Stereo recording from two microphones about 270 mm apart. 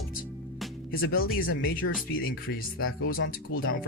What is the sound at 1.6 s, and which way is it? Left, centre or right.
Speech, left.